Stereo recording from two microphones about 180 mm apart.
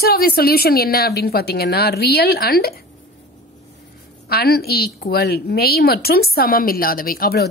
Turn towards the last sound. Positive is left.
turn(degrees=55)  # may be behind; listen again after turning